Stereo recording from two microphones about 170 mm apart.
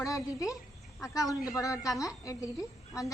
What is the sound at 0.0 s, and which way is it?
A woman's voice, 20° left (ahead or behind).